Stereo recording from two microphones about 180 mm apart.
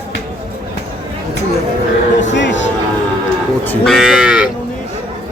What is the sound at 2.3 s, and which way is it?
Speech, 80° left.